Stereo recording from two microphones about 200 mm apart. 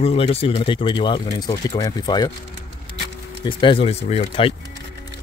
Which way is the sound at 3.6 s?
25° left (ahead or behind).